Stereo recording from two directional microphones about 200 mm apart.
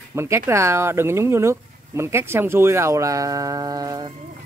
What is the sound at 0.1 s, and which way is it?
Speech, 15° right (ahead or behind).